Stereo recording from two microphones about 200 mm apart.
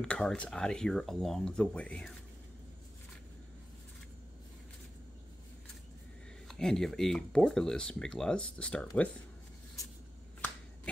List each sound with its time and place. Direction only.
0.0 s speech: 5° left (ahead or behind)
6.4 s speech: centre (ahead or behind)